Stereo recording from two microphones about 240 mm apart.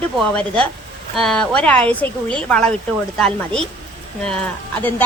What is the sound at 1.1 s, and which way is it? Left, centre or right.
Speech, centre.